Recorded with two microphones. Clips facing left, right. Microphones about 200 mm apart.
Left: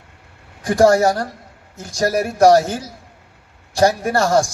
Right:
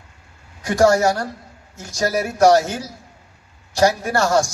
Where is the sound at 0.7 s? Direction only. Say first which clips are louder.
Left 2 dB; 30° left (ahead or behind).